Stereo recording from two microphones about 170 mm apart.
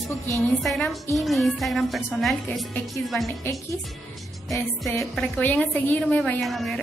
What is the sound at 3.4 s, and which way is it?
Speech, 15° left (ahead or behind).